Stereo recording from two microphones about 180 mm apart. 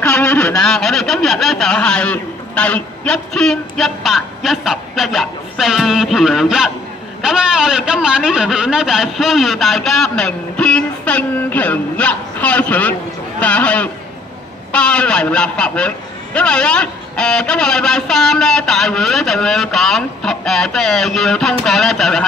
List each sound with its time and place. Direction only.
0.0 s a man's voice: 10° left (ahead or behind)